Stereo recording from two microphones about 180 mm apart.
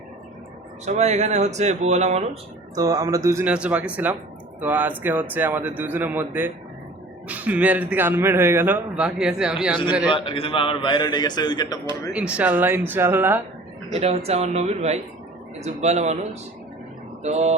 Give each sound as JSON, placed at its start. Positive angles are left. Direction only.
{"t": 0.9, "sound": "speech", "side_deg": -40}
{"t": 2.7, "sound": "a man's voice", "side_deg": -20}
{"t": 10.1, "sound": "a man's voice", "side_deg": 30}
{"t": 12.1, "sound": "a man's voice", "side_deg": -5}
{"t": 13.9, "sound": "speech", "side_deg": -35}